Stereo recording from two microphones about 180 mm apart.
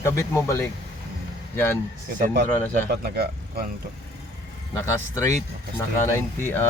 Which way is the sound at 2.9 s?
60° right (ahead or behind).